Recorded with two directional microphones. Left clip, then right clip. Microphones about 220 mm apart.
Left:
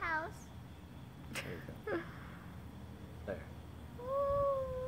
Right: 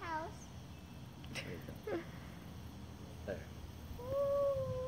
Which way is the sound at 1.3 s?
10° left (ahead or behind).